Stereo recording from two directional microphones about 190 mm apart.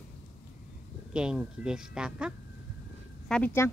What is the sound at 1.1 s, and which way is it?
Speech, 5° right (ahead or behind).